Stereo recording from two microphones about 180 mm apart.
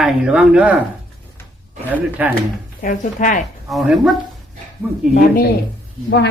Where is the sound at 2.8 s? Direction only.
45° left (ahead or behind).